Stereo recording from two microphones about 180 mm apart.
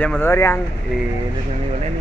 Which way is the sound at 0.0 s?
10° left (ahead or behind).